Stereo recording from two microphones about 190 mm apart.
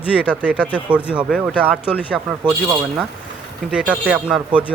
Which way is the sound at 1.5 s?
5° left (ahead or behind).